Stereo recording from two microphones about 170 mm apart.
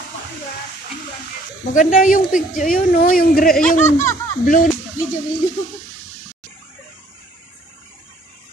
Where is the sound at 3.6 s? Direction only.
45° left (ahead or behind).